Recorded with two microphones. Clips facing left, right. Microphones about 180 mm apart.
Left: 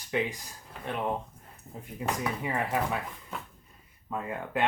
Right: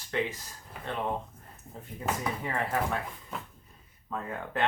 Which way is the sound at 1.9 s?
10° left (ahead or behind).